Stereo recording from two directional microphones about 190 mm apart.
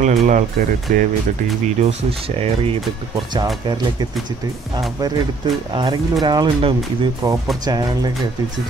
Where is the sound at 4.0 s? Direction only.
20° right (ahead or behind).